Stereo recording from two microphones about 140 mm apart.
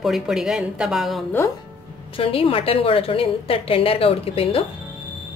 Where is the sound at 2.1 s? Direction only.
40° left (ahead or behind).